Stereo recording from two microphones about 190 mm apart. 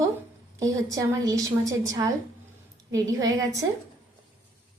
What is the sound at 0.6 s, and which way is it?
A woman's voice, 20° right (ahead or behind).